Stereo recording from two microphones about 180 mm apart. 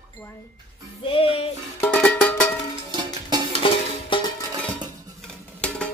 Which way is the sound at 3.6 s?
30° left (ahead or behind).